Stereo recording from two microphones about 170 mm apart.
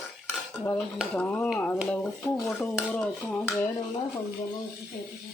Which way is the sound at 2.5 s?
5° left (ahead or behind).